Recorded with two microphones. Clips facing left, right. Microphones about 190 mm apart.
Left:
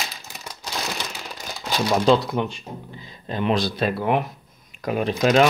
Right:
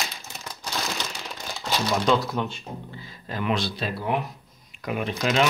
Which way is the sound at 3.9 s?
60° left (ahead or behind).